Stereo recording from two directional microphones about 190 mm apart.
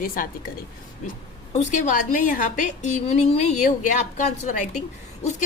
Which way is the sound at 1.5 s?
40° left (ahead or behind).